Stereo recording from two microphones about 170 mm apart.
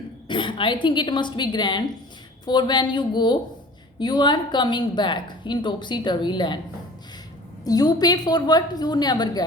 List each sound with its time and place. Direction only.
0.3 s a woman's voice: 30° left (ahead or behind)
7.6 s a woman's voice: 20° left (ahead or behind)